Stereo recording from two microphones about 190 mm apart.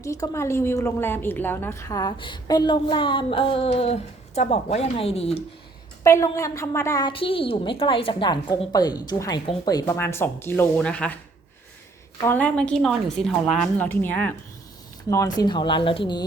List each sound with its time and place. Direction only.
0.0 s a woman's voice: 15° left (ahead or behind); by 5.4 s 30° left (ahead or behind)
6.0 s a woman's voice: 15° left (ahead or behind)
12.2 s a woman's voice: 10° left (ahead or behind); by 16.2 s 25° left (ahead or behind)